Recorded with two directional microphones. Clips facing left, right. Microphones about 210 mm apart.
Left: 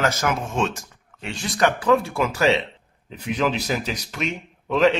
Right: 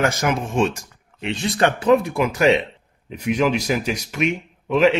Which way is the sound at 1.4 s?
25° right (ahead or behind).